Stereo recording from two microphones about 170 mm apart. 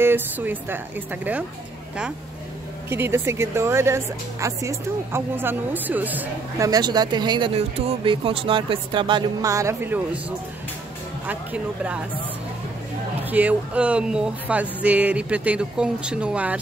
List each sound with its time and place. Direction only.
0.0 s speech: 10° right (ahead or behind)
2.9 s speech: 15° right (ahead or behind)
6.7 s speech: 25° right (ahead or behind)
11.2 s speech: 10° right (ahead or behind)
13.2 s speech: 10° right (ahead or behind)